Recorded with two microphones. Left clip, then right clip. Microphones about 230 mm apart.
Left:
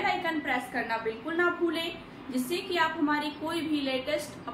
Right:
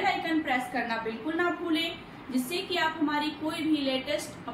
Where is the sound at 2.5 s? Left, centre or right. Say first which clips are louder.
Left 1 dB; centre.